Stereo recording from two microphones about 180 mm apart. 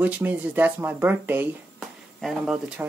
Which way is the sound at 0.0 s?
10° right (ahead or behind).